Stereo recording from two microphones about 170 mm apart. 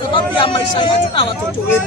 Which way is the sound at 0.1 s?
30° left (ahead or behind).